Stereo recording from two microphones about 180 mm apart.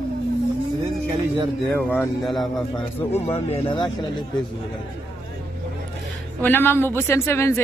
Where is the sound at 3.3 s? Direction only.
35° left (ahead or behind).